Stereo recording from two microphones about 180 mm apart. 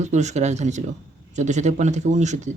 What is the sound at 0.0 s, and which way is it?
A woman's voice, 40° right (ahead or behind).